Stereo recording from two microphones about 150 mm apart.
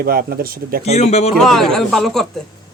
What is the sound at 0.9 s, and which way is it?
Speech, 45° left (ahead or behind).